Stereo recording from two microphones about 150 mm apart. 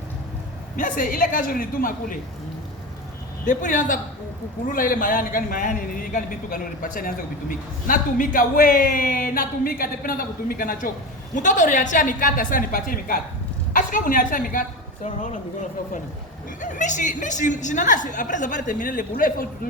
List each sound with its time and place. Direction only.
0.8 s a woman's voice: 65° left (ahead or behind)
3.4 s a woman's voice: 55° left (ahead or behind)
11.3 s a woman's voice: 55° left (ahead or behind)
16.6 s a woman's voice: 60° left (ahead or behind)